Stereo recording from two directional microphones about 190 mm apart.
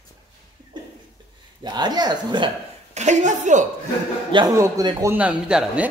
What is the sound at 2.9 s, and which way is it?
Speech, 35° right (ahead or behind).